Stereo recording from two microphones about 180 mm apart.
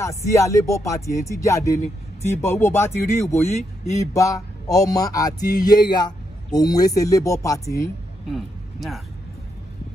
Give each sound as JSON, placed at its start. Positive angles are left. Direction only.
{"t": 0.0, "sound": "speech", "side_deg": 15}
{"t": 4.0, "sound": "a sound", "side_deg": 15}
{"t": 7.4, "sound": "speech", "side_deg": 20}
{"t": 8.3, "sound": "speech", "side_deg": 0}